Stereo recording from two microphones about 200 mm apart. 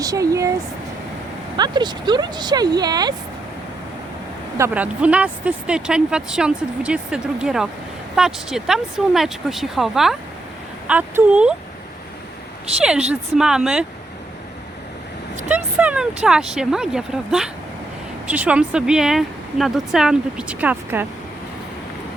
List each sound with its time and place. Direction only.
0.0 s speech: 15° right (ahead or behind)
1.5 s speech: 20° right (ahead or behind)
4.5 s speech: 10° right (ahead or behind)
13.1 s speech: 5° right (ahead or behind)
15.4 s speech: 5° right (ahead or behind)